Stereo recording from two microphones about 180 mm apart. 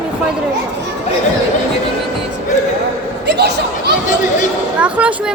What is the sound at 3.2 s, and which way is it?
Speech, 70° right (ahead or behind).